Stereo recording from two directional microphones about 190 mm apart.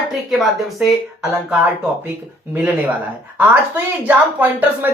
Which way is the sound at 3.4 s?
10° right (ahead or behind).